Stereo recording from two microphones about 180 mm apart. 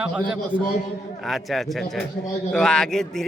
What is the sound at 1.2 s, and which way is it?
A man's voice, centre (ahead or behind).